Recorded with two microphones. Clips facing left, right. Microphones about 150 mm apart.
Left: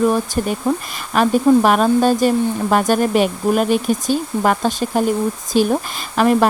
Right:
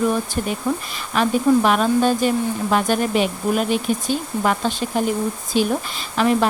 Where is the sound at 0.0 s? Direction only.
45° left (ahead or behind).